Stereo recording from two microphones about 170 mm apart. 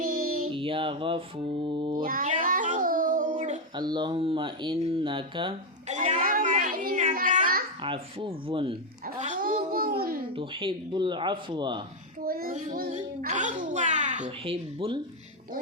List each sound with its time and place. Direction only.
0.0 s child singing: 60° right (ahead or behind)
0.5 s speech: 30° right (ahead or behind)
2.0 s a sound: 55° right (ahead or behind)
3.8 s speech: 25° right (ahead or behind)
5.9 s a sound: 45° right (ahead or behind)
7.8 s speech: 30° right (ahead or behind)
9.1 s babbling: 45° right (ahead or behind)
10.3 s speech: 30° right (ahead or behind)
12.2 s child singing: 60° right (ahead or behind)
12.5 s a sound: 55° right (ahead or behind)
14.3 s speech: 35° right (ahead or behind)